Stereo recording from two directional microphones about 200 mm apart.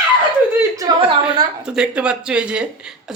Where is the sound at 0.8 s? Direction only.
25° right (ahead or behind).